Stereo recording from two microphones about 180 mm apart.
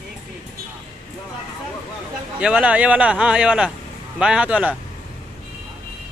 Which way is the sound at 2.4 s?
5° right (ahead or behind).